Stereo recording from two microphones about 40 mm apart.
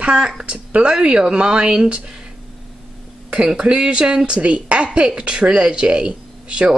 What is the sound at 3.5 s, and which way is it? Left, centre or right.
Speech, right.